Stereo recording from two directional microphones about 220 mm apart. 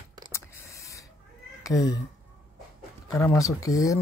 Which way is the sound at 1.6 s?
15° left (ahead or behind).